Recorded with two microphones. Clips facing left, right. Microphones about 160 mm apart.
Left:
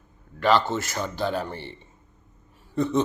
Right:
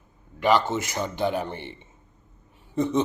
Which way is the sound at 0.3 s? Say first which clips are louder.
Even; 15° right (ahead or behind).